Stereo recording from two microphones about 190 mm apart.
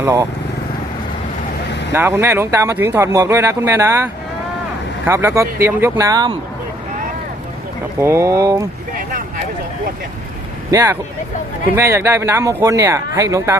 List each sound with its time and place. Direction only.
0.0 s speech: 15° right (ahead or behind)
1.9 s speech: 10° right (ahead or behind)
7.9 s speech: 15° right (ahead or behind)
10.7 s speech: 15° right (ahead or behind)